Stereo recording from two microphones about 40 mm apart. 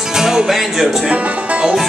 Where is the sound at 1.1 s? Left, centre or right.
Right.